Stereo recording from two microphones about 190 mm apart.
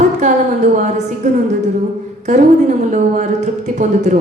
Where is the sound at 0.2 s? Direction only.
40° right (ahead or behind).